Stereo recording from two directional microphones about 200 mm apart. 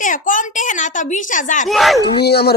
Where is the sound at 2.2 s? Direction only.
55° left (ahead or behind).